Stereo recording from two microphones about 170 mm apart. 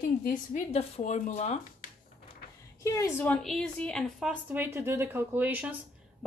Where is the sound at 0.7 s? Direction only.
40° left (ahead or behind).